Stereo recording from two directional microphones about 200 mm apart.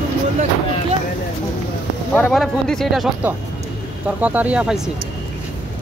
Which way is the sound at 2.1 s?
5° left (ahead or behind).